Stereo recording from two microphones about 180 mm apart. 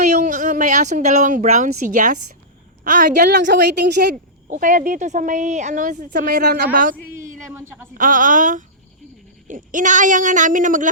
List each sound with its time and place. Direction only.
0.0 s speech: 40° right (ahead or behind)
3.3 s a woman's voice: 70° right (ahead or behind)
4.1 s speech: 45° right (ahead or behind)
6.1 s speech: 60° right (ahead or behind)
7.5 s a woman's voice: 15° right (ahead or behind)
7.9 s speech: 45° right (ahead or behind)